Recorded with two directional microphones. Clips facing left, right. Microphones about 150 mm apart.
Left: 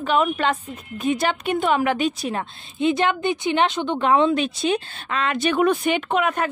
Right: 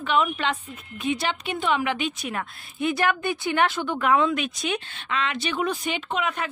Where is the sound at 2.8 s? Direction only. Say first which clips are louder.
Left 4 dB; 20° left (ahead or behind).